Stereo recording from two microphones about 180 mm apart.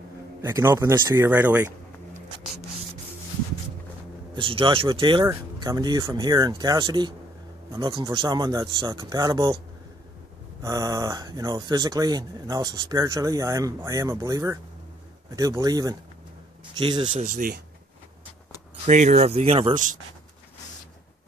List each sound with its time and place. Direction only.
0.4 s speech: 15° right (ahead or behind)
4.4 s speech: 30° right (ahead or behind)
10.6 s speech: 20° right (ahead or behind)
17.2 s speech: 50° right (ahead or behind)
18.9 s speech: 40° right (ahead or behind)